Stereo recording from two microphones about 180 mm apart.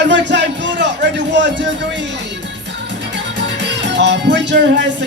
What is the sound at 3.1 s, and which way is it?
Music, 85° right.